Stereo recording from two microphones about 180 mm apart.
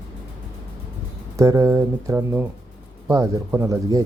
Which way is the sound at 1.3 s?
20° right (ahead or behind).